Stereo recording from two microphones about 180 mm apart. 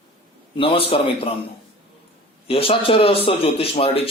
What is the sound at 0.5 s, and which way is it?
Speech, 30° left (ahead or behind).